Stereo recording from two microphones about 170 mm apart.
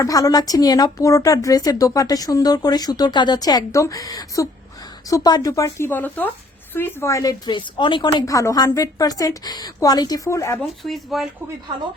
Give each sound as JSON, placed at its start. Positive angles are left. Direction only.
{"t": 0.0, "sound": "speech", "side_deg": 20}
{"t": 10.8, "sound": "speech", "side_deg": 0}